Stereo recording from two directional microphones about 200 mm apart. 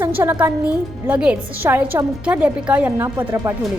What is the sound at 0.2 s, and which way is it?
A woman's voice, 15° right (ahead or behind).